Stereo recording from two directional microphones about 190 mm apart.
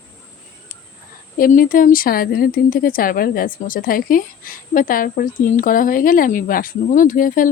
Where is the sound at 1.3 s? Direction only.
45° left (ahead or behind).